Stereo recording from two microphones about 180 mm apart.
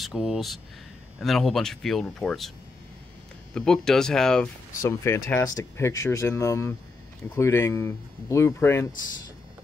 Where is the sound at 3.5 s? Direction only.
5° left (ahead or behind).